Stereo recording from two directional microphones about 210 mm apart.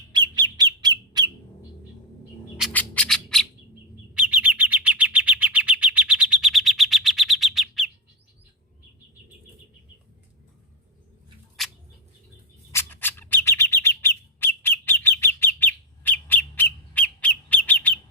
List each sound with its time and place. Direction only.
0.1 s bird: 20° right (ahead or behind)
2.6 s bird: 5° left (ahead or behind)
11.6 s mouse: centre (ahead or behind)
12.7 s bird: 10° left (ahead or behind)